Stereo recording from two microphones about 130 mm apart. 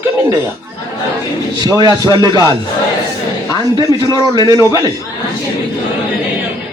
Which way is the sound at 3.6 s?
30° right (ahead or behind).